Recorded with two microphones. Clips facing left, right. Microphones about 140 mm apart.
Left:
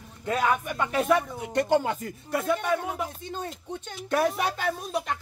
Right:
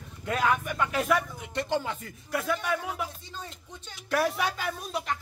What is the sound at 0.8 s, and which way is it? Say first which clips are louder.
Speech: left 6 dB; 25° left (ahead or behind).